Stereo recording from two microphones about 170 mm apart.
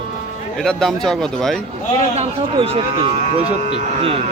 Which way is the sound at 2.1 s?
35° right (ahead or behind).